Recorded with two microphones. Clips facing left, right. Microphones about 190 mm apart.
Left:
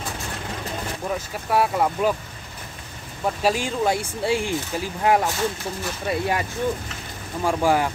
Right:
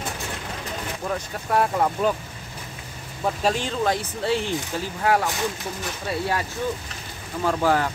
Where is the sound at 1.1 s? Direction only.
5° left (ahead or behind).